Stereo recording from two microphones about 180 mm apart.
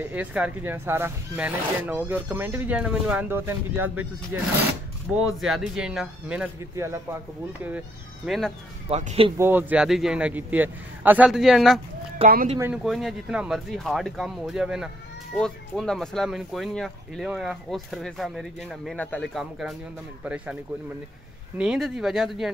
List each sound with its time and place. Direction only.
0.0 s speech: 10° right (ahead or behind)
8.3 s speech: centre (ahead or behind)
8.8 s speech: 35° right (ahead or behind)
9.4 s speech: 10° right (ahead or behind)
21.5 s speech: 5° right (ahead or behind)